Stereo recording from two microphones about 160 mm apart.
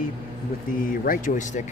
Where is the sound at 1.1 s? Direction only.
55° left (ahead or behind).